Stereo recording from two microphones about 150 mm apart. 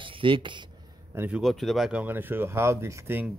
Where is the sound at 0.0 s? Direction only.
35° right (ahead or behind).